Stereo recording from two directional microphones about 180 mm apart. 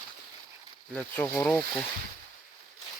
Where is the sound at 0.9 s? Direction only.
10° left (ahead or behind).